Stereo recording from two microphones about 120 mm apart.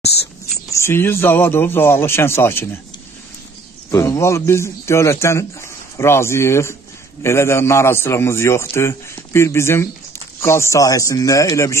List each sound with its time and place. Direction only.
0.7 s a man's voice: 25° left (ahead or behind)
3.9 s a man's voice: 25° left (ahead or behind)